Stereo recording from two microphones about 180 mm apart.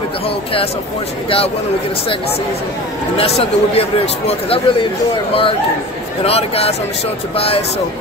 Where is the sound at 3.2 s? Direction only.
35° left (ahead or behind).